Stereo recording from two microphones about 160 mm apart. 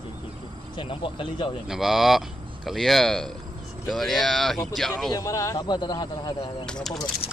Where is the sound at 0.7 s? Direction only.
30° left (ahead or behind).